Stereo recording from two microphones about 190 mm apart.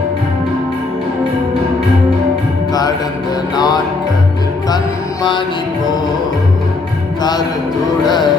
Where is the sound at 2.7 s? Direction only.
20° left (ahead or behind).